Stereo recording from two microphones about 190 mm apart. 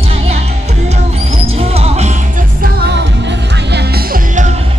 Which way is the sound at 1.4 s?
30° right (ahead or behind).